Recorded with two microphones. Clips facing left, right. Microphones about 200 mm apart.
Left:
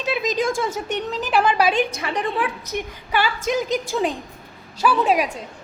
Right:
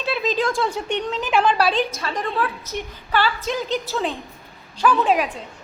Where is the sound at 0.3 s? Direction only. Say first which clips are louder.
Right 1 dB; 45° left (ahead or behind).